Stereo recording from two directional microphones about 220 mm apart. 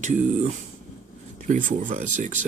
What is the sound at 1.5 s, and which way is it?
Speech, 35° right (ahead or behind).